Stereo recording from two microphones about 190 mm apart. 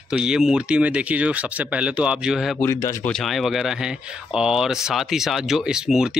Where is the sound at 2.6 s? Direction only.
15° left (ahead or behind).